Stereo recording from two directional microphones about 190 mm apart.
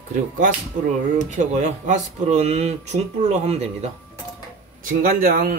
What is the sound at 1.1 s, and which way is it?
Speech, 40° right (ahead or behind).